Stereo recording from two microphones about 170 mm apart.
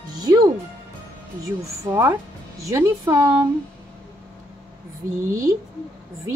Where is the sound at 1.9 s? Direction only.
15° right (ahead or behind).